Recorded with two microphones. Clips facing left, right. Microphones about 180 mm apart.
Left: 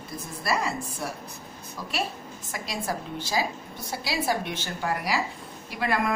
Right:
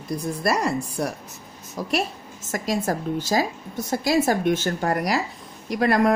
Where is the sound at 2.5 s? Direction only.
45° right (ahead or behind).